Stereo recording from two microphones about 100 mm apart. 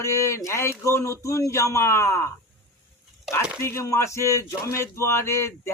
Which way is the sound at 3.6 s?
30° left (ahead or behind).